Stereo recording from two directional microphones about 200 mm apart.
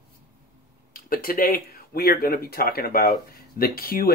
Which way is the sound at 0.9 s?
45° left (ahead or behind).